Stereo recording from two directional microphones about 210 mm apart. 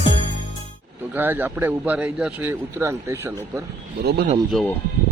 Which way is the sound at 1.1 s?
10° right (ahead or behind).